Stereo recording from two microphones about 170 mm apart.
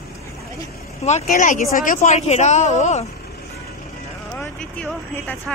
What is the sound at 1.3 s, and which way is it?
A woman's voice, 50° left (ahead or behind).